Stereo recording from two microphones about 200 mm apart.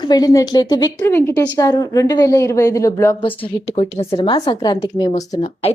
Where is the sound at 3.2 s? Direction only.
25° left (ahead or behind).